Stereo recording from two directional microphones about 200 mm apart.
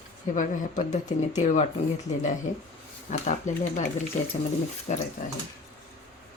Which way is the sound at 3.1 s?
40° left (ahead or behind).